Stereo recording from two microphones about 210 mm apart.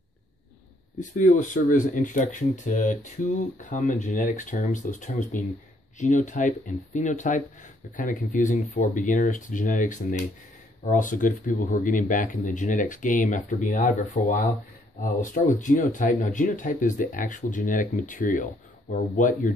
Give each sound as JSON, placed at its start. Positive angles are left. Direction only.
{"t": 1.1, "sound": "speech", "side_deg": 40}